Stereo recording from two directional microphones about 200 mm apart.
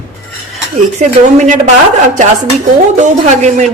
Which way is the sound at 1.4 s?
40° right (ahead or behind).